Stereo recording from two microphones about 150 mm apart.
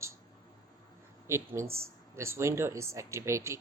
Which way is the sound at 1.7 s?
20° right (ahead or behind).